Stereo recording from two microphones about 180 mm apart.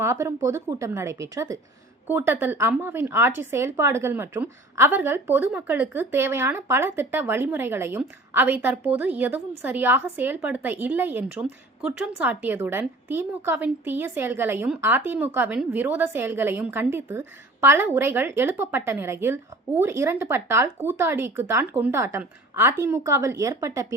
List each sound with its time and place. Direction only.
0.0 s speech: 15° right (ahead or behind)